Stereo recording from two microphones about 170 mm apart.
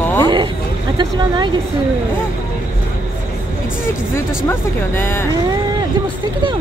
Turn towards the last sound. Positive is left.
turn(degrees=15)  # may be behind; listen again after turning